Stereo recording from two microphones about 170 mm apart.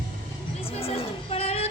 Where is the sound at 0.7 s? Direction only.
35° left (ahead or behind).